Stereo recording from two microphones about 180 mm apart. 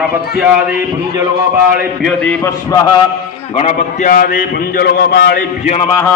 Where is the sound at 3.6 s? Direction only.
40° left (ahead or behind); by 5.1 s 55° left (ahead or behind).